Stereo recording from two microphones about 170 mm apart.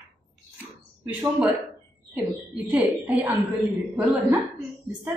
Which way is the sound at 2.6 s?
5° right (ahead or behind).